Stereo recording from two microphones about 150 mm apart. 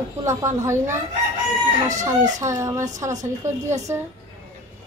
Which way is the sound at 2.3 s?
20° right (ahead or behind).